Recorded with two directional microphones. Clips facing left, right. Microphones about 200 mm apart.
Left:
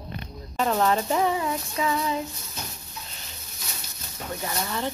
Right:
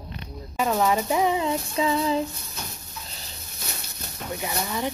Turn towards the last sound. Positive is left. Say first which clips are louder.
# right 1 dB
turn(degrees=-15)  # may be behind; listen again after turning